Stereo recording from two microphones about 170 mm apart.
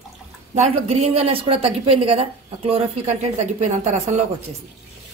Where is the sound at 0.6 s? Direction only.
40° right (ahead or behind).